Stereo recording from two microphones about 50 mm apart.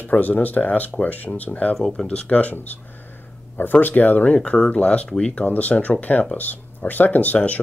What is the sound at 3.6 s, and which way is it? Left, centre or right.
Speech, left.